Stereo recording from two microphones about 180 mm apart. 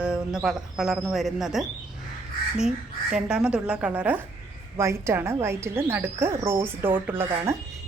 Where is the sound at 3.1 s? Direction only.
5° right (ahead or behind).